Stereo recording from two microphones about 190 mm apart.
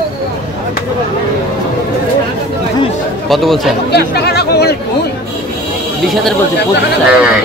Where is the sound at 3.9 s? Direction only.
60° left (ahead or behind).